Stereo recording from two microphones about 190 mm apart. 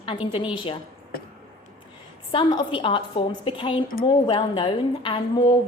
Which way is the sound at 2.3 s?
25° left (ahead or behind).